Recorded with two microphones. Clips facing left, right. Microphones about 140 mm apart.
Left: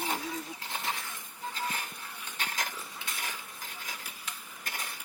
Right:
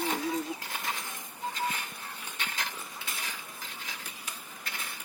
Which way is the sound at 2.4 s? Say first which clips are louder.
Left 2 dB; 40° left (ahead or behind).